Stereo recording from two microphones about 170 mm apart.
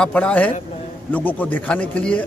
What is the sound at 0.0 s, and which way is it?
A man's voice, 5° left (ahead or behind).